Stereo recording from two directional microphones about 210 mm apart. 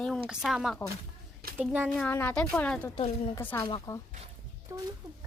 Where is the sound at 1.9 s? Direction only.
10° left (ahead or behind).